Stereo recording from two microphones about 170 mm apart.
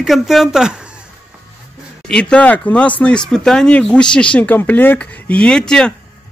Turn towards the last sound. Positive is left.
turn(degrees=5)  # may be behind; listen again after turning